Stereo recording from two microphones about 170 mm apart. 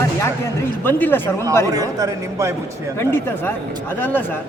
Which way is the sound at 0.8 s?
10° left (ahead or behind).